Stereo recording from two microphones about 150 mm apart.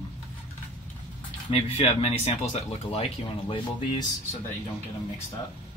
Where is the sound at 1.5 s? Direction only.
40° left (ahead or behind).